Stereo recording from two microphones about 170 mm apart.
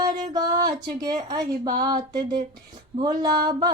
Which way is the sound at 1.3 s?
20° right (ahead or behind).